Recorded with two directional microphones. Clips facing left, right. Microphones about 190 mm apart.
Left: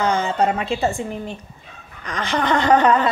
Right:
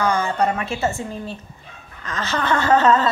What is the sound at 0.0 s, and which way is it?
Speech, 20° left (ahead or behind).